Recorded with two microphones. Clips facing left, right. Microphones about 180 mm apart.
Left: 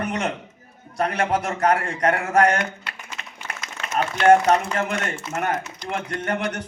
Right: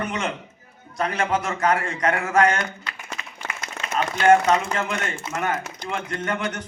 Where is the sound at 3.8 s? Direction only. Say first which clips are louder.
Even; 15° right (ahead or behind).